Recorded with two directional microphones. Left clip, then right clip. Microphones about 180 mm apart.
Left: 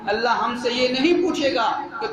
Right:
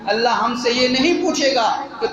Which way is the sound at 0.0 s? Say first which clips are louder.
Right 3 dB; 10° right (ahead or behind).